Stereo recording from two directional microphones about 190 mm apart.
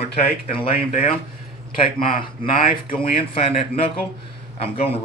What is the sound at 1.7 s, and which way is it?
A man's voice, 25° left (ahead or behind).